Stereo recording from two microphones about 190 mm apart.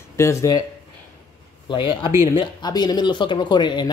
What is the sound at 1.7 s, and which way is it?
Speech, 25° left (ahead or behind).